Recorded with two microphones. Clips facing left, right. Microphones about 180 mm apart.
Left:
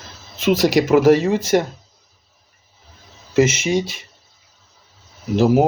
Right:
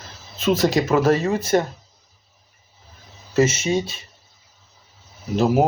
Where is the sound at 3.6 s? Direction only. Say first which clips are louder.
Left 2 dB; 25° right (ahead or behind).